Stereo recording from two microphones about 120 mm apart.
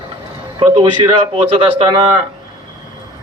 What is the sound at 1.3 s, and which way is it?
Speech, 65° right (ahead or behind).